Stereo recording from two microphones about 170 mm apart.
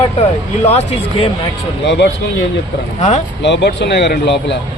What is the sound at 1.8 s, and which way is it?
Speech, 90° left.